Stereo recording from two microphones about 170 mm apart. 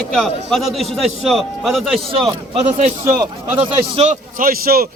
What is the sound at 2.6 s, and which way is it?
Speech, 45° right (ahead or behind).